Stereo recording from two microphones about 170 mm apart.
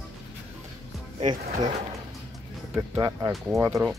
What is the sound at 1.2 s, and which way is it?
Speech, 45° right (ahead or behind).